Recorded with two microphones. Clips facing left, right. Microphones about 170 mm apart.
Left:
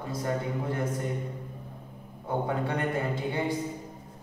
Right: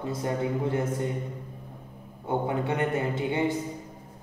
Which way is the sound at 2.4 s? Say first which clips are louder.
Right 2 dB; 20° right (ahead or behind).